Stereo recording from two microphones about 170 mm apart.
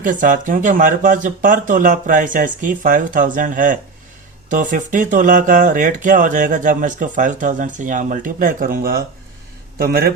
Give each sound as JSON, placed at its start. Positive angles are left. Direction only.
{"t": 0.0, "sound": "a man's voice", "side_deg": -50}